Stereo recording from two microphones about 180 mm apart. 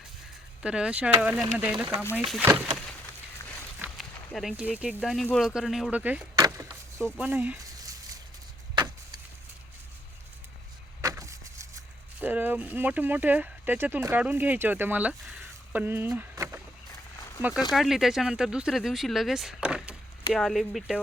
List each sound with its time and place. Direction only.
0.6 s speech: 5° right (ahead or behind)
2.4 s speech: 10° right (ahead or behind)
3.9 s speech: centre (ahead or behind)
6.3 s a sound: 20° right (ahead or behind)
7.2 s speech: 10° right (ahead or behind)
7.6 s a sound: 20° right (ahead or behind)
8.7 s vehicle: 25° right (ahead or behind)
11.0 s vehicle: 15° right (ahead or behind)
12.2 s speech: 10° right (ahead or behind)
17.2 s a sound: 20° left (ahead or behind)
17.7 s speech: centre (ahead or behind)